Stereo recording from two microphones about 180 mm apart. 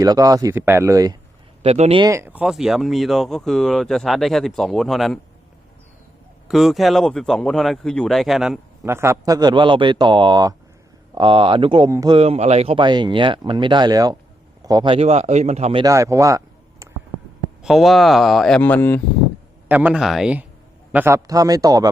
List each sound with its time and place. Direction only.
0.0 s speech: 20° right (ahead or behind)
1.6 s speech: 35° right (ahead or behind)
2.0 s speech: 15° right (ahead or behind)
6.5 s speech: centre (ahead or behind)
8.8 s speech: 15° right (ahead or behind)
12.1 s speech: 35° right (ahead or behind)
15.8 s speech: 15° right (ahead or behind)
16.8 s a sound: 15° right (ahead or behind)
17.6 s speech: centre (ahead or behind)
19.6 s speech: 10° right (ahead or behind)
20.9 s speech: 15° right (ahead or behind)